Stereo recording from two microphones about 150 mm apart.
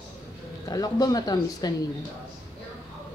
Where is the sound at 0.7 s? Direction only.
25° left (ahead or behind).